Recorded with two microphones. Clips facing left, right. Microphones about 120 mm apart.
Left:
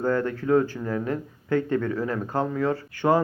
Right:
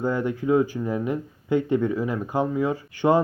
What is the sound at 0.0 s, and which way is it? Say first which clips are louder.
Speech: even; 15° right (ahead or behind).